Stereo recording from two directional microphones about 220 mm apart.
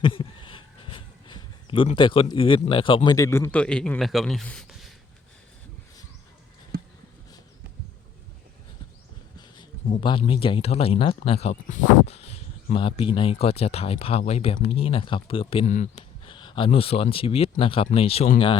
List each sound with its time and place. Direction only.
0.0 s a sound: 25° left (ahead or behind)
2.3 s a man's voice: 25° left (ahead or behind); by 4.9 s centre (ahead or behind)
10.0 s speech: 20° left (ahead or behind)